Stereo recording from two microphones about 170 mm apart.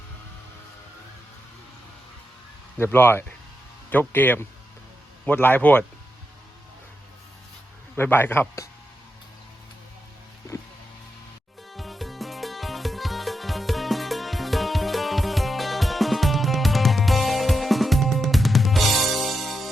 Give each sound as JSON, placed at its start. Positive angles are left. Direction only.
{"t": 2.7, "sound": "a man's voice", "side_deg": 10}
{"t": 7.9, "sound": "a man's voice", "side_deg": 15}
{"t": 10.5, "sound": "music", "side_deg": 15}
{"t": 11.7, "sound": "music", "side_deg": 0}